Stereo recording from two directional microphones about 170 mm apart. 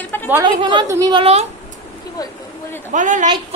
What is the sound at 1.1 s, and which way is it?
Speech, 40° right (ahead or behind).